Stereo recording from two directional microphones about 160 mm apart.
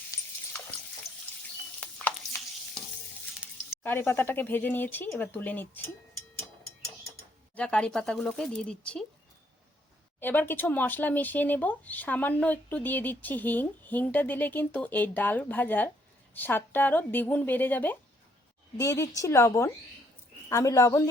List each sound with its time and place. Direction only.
0.1 s water: 20° left (ahead or behind)
1.8 s stir: 10° left (ahead or behind)
3.8 s speech: 15° left (ahead or behind)
7.5 s speech: 5° left (ahead or behind)
10.2 s a woman's voice: 10° left (ahead or behind)